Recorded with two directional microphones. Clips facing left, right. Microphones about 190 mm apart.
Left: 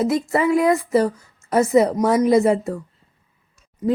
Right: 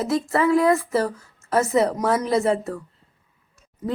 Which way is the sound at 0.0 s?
15° left (ahead or behind).